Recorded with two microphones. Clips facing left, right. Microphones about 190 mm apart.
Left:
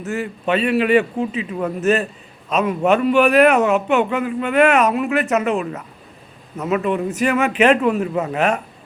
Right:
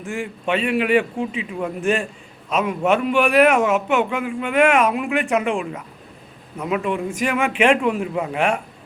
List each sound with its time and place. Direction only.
0.0 s a man's voice: 10° right (ahead or behind)